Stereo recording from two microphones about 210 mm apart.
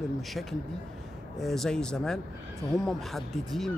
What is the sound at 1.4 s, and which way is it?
Speech, centre (ahead or behind).